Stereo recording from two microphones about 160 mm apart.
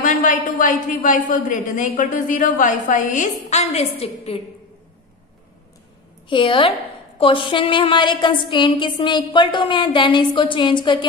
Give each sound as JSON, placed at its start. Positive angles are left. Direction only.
{"t": 0.0, "sound": "a woman's voice", "side_deg": 55}
{"t": 3.4, "sound": "a woman's voice", "side_deg": 45}
{"t": 6.2, "sound": "a woman's voice", "side_deg": 30}